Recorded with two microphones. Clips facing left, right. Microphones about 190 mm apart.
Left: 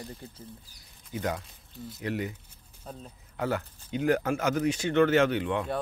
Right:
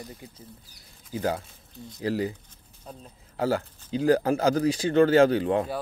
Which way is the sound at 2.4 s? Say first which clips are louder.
Even; 5° left (ahead or behind).